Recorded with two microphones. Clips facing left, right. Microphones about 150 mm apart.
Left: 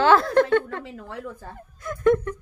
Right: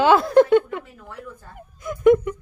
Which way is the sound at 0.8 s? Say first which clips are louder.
Left 4 dB; 90° left.